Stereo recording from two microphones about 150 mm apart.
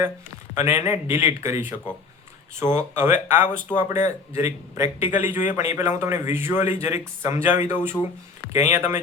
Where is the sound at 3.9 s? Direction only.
50° left (ahead or behind).